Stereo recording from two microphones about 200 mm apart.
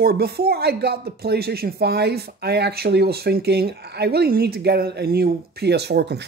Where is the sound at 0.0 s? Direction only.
50° right (ahead or behind).